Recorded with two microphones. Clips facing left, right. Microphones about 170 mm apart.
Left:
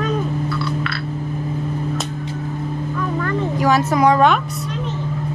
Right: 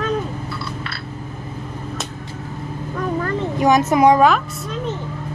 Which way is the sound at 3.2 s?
35° right (ahead or behind).